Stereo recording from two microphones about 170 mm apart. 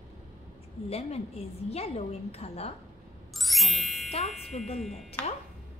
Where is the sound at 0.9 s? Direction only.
40° left (ahead or behind).